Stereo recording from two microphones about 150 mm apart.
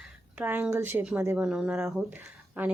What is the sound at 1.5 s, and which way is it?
Speech, 5° right (ahead or behind).